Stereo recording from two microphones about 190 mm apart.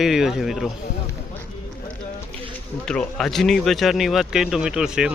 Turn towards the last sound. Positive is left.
turn(degrees=-5)  # may be behind; listen again after turning